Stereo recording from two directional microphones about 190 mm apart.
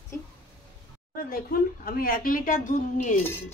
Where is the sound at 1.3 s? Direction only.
50° left (ahead or behind).